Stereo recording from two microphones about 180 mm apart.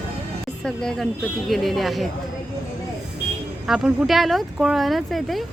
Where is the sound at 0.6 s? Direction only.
5° left (ahead or behind).